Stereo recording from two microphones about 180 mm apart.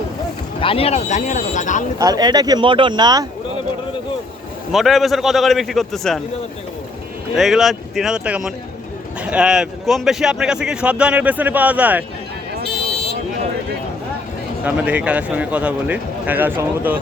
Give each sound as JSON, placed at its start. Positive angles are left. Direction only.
{"t": 0.6, "sound": "speech", "side_deg": 30}
{"t": 2.0, "sound": "speech", "side_deg": -20}
{"t": 4.7, "sound": "a man's voice", "side_deg": 0}
{"t": 7.3, "sound": "a man's voice", "side_deg": 0}
{"t": 14.6, "sound": "a man's voice", "side_deg": -10}